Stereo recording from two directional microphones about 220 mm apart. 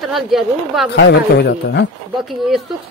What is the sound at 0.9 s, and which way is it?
Speech, 50° left (ahead or behind).